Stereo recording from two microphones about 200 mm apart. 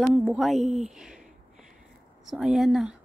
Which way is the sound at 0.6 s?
35° right (ahead or behind).